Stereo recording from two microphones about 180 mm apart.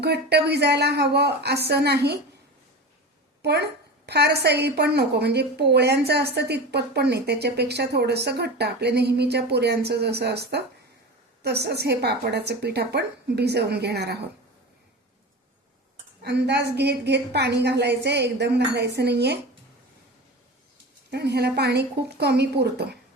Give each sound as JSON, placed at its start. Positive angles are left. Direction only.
{"t": 0.0, "sound": "a woman's voice", "side_deg": -65}
{"t": 3.4, "sound": "a woman's voice", "side_deg": -65}
{"t": 16.2, "sound": "a woman's voice", "side_deg": -70}
{"t": 21.1, "sound": "a woman's voice", "side_deg": -65}